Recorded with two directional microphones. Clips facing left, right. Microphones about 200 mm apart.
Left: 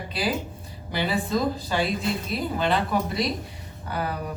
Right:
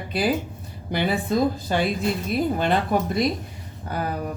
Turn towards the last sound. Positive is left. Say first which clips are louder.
# right 2 dB
turn(degrees=-45)  # may be behind; listen again after turning